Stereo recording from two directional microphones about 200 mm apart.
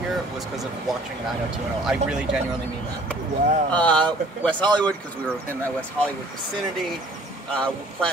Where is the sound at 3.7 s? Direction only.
5° left (ahead or behind).